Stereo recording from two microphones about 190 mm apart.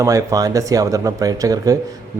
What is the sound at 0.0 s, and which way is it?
Speech, 15° right (ahead or behind).